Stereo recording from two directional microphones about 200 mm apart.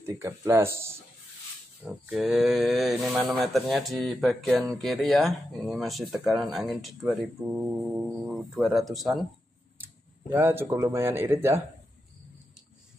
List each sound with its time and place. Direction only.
0.0 s speech: 15° right (ahead or behind)
1.9 s speech: centre (ahead or behind)
10.3 s speech: 10° right (ahead or behind)